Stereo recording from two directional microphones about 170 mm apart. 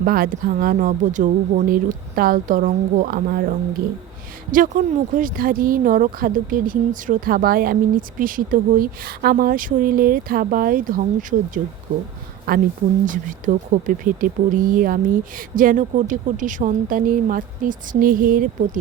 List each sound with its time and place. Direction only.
0.0 s speech: 60° right (ahead or behind)
4.8 s speech: 50° right (ahead or behind)
12.5 s speech: 65° right (ahead or behind)
13.1 s speech: 50° right (ahead or behind)